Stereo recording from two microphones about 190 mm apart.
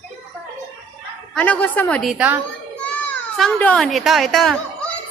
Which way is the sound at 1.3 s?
5° left (ahead or behind).